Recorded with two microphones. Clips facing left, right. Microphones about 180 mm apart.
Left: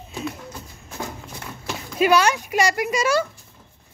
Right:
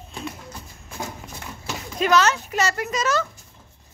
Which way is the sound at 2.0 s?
10° left (ahead or behind).